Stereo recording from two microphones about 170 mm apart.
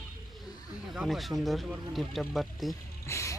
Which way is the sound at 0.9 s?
Centre (ahead or behind).